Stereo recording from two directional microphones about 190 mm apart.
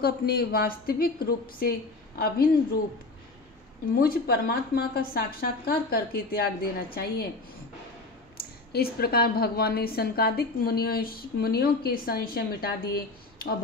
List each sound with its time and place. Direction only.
0.0 s speech: 55° left (ahead or behind)
4.0 s speech: 50° left (ahead or behind)
8.4 s speech: 55° left (ahead or behind)